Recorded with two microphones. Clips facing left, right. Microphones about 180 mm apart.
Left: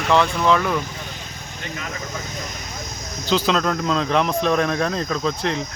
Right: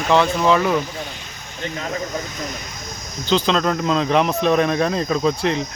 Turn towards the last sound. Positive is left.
turn(degrees=-10)  # may be behind; listen again after turning